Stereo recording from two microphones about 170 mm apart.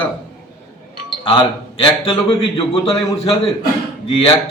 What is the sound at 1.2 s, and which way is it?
A man's voice, 30° left (ahead or behind).